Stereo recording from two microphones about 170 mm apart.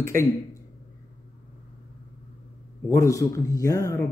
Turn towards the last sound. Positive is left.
turn(degrees=20)  # may be behind; listen again after turning